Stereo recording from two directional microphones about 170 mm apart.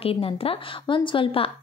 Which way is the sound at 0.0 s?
35° left (ahead or behind).